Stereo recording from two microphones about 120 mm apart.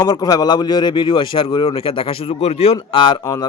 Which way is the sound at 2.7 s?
40° left (ahead or behind).